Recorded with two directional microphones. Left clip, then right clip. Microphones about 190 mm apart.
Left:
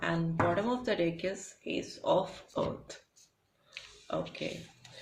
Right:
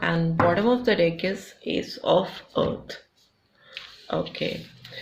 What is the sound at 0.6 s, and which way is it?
Speech, 30° right (ahead or behind).